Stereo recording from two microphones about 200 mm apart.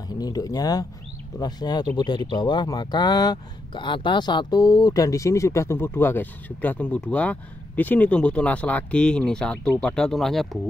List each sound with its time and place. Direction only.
0.1 s speech: 20° left (ahead or behind); by 10.6 s centre (ahead or behind)